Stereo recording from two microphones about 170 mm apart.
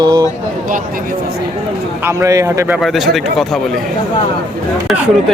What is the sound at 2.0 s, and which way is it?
Speech, 15° right (ahead or behind).